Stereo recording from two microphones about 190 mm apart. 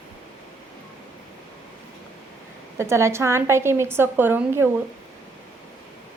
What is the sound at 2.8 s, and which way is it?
A woman's voice, 15° right (ahead or behind).